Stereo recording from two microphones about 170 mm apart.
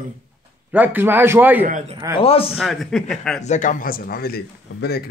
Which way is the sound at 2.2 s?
35° left (ahead or behind).